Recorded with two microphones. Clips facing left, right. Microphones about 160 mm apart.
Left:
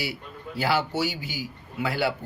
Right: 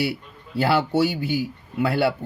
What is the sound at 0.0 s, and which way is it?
Speech, 60° right (ahead or behind).